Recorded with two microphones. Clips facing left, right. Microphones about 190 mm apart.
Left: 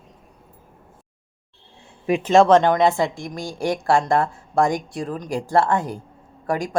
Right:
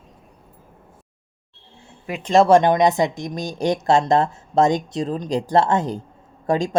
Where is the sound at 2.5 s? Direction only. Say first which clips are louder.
Right 1 dB; 15° right (ahead or behind).